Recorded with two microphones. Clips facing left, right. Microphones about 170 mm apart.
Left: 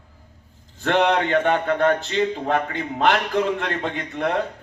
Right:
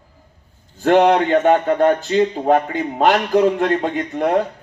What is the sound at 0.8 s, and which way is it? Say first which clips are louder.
A man's voice: right 6 dB; 45° right (ahead or behind).